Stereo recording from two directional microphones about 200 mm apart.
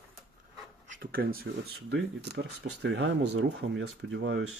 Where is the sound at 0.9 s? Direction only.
45° right (ahead or behind); by 4.5 s 70° right (ahead or behind).